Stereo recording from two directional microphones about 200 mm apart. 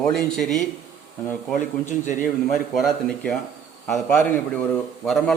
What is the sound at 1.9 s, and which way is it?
Speech, 40° left (ahead or behind).